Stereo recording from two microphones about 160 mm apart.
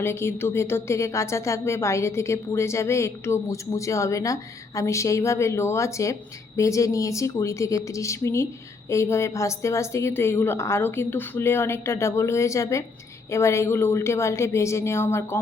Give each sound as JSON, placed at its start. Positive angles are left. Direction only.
{"t": 0.0, "sound": "a woman's voice", "side_deg": 15}